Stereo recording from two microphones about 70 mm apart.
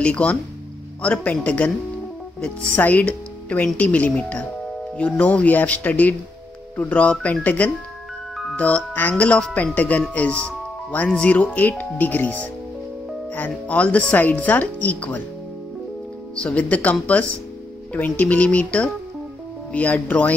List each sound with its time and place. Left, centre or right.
0.0 s speech: centre
2.7 s speech: left
16.3 s speech: centre